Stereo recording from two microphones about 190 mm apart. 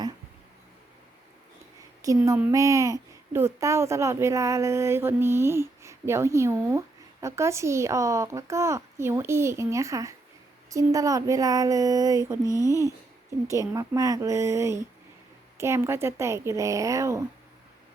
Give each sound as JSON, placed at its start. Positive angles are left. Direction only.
{"t": 2.0, "sound": "a woman's voice", "side_deg": -15}
{"t": 12.4, "sound": "speech", "side_deg": 15}
{"t": 13.5, "sound": "a woman's voice", "side_deg": -15}